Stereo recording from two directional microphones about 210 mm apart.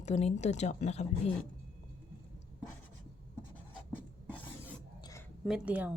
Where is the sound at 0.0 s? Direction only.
30° left (ahead or behind).